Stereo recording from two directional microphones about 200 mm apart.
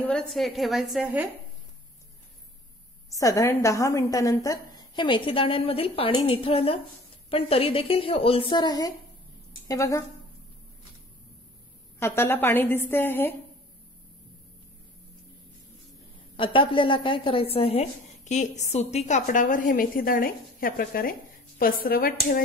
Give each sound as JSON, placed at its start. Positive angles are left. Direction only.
{"t": 0.0, "sound": "a woman's voice", "side_deg": 0}
{"t": 3.1, "sound": "a woman's voice", "side_deg": 15}
{"t": 12.0, "sound": "a woman's voice", "side_deg": 10}
{"t": 16.5, "sound": "a woman's voice", "side_deg": 25}